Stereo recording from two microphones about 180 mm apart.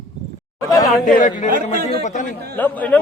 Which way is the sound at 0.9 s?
Centre (ahead or behind).